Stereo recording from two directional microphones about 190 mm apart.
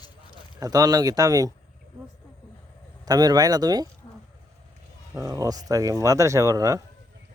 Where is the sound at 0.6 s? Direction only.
20° right (ahead or behind).